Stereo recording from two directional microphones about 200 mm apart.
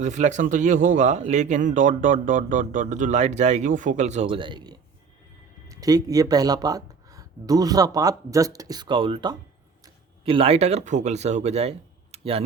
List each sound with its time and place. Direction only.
0.0 s speech: 35° right (ahead or behind)
12.1 s tick-tock: 30° right (ahead or behind)